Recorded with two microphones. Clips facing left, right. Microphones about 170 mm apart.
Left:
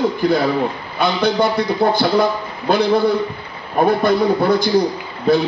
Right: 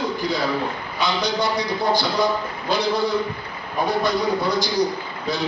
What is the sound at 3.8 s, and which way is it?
A man's voice, 55° left (ahead or behind).